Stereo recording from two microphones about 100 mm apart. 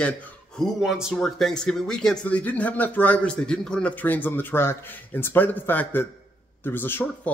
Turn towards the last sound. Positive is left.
turn(degrees=20)  # may be behind; listen again after turning